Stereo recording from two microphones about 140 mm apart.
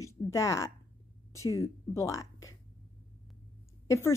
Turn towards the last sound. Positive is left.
turn(degrees=20)  # may be behind; listen again after turning